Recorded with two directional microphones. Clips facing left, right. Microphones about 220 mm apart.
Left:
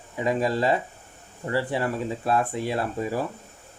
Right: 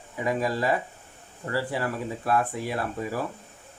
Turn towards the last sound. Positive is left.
turn(degrees=25)  # may be behind; listen again after turning